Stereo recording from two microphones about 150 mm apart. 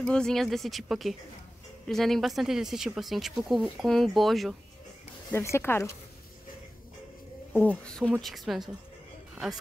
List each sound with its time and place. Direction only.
0.0 s speech: 5° left (ahead or behind)
5.3 s speech: 15° left (ahead or behind)
7.5 s speech: 10° left (ahead or behind)